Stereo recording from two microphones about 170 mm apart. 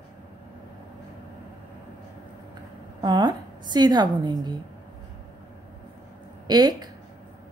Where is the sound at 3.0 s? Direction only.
25° right (ahead or behind).